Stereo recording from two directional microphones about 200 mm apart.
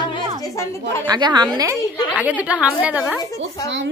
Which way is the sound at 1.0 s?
20° right (ahead or behind).